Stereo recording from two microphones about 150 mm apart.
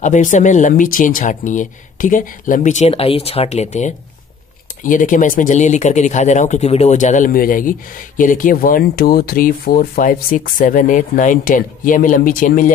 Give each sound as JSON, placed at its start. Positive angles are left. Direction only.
{"t": 0.0, "sound": "speech", "side_deg": 55}
{"t": 4.8, "sound": "speech", "side_deg": 60}